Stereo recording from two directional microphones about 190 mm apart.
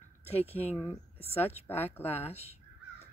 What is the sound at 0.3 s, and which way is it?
Speech, 35° left (ahead or behind).